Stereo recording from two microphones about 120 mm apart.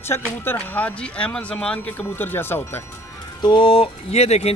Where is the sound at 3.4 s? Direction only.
40° left (ahead or behind); by 4.5 s 60° left (ahead or behind).